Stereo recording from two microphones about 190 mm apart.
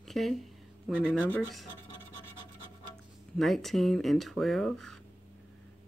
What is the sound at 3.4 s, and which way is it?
Speech, centre (ahead or behind).